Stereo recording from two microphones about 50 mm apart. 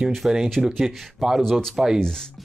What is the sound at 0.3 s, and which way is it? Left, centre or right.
Speech, centre.